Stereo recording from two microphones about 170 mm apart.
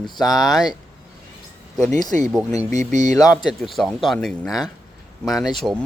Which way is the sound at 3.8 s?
Centre (ahead or behind).